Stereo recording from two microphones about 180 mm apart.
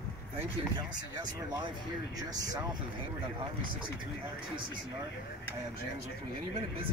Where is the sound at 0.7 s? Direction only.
20° right (ahead or behind).